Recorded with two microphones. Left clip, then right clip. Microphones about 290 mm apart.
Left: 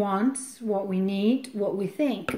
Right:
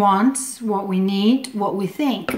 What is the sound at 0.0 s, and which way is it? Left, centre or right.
A woman's voice, centre.